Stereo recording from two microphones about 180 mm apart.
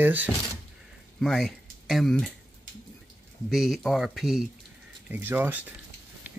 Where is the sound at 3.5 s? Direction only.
Centre (ahead or behind).